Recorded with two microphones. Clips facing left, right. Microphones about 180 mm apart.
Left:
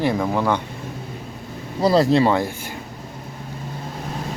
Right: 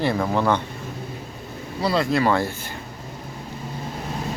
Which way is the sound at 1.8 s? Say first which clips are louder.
Left 5 dB; 35° left (ahead or behind).